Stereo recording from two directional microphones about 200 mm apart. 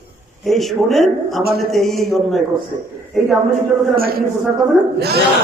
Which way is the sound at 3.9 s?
50° right (ahead or behind).